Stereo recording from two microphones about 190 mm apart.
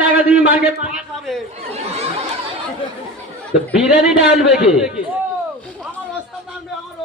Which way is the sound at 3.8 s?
5° right (ahead or behind).